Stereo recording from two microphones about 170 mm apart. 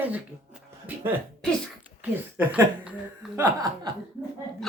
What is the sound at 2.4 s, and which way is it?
Speech, 10° right (ahead or behind).